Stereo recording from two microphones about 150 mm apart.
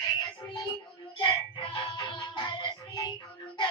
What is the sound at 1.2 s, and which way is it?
Music, 35° left (ahead or behind).